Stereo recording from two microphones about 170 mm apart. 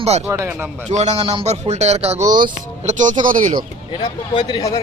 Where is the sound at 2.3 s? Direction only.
50° right (ahead or behind).